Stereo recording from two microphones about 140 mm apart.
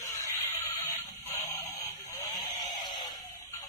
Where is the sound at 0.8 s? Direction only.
25° left (ahead or behind).